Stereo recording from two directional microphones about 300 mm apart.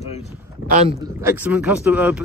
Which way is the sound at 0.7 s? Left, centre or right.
Right.